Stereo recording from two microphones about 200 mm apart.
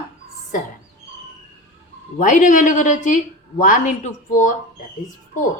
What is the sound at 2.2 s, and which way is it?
A woman's voice, 40° left (ahead or behind).